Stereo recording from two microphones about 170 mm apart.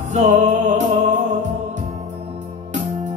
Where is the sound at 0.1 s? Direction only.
45° right (ahead or behind).